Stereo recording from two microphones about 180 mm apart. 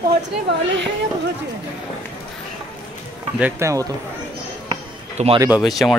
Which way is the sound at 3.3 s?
10° right (ahead or behind).